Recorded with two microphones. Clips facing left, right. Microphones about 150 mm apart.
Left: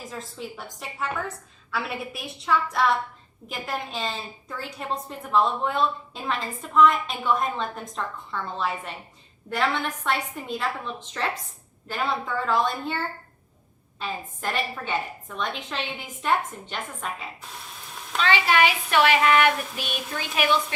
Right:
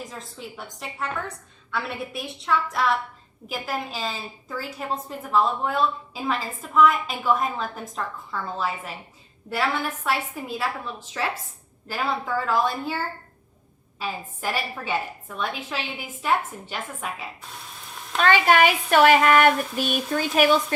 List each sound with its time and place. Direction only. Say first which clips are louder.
0.0 s a woman's voice: left 1 dB; centre (ahead or behind)
14.0 s a woman's voice: right 1 dB; 5° right (ahead or behind)
18.2 s child singing: right 3 dB; 50° right (ahead or behind)